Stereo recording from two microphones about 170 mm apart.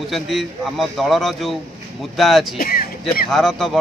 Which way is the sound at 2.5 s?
60° left (ahead or behind).